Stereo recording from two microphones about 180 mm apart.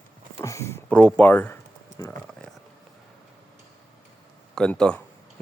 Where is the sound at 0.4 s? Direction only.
15° left (ahead or behind).